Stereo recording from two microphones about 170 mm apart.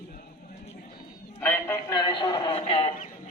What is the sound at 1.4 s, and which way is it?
A man's voice, 15° left (ahead or behind).